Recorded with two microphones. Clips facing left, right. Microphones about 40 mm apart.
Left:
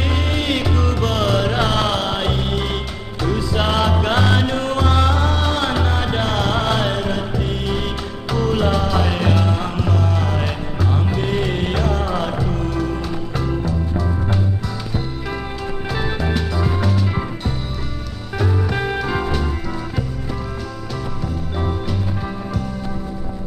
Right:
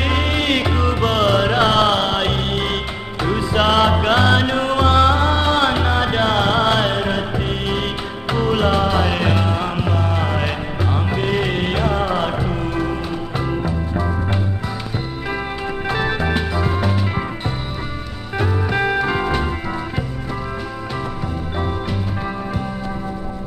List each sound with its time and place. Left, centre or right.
0.0 s music: right
15.9 s music: right
18.4 s music: right